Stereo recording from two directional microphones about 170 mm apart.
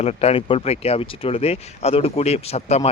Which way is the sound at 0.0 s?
35° left (ahead or behind).